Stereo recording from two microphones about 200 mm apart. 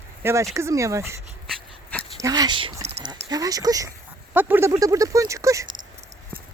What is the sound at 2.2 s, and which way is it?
Speech, 20° right (ahead or behind).